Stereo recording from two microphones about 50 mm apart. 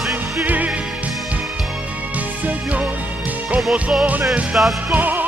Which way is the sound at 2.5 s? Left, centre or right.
Right.